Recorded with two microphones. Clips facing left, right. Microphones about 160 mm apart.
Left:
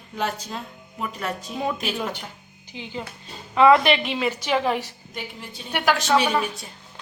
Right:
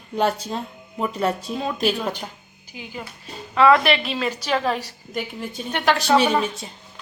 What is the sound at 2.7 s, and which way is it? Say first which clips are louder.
A woman's voice: left 2 dB; 25° left (ahead or behind).